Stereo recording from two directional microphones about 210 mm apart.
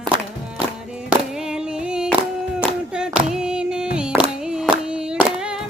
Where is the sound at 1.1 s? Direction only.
5° right (ahead or behind).